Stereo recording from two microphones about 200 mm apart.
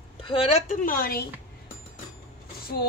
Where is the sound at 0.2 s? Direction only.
30° left (ahead or behind); by 1.2 s 45° left (ahead or behind).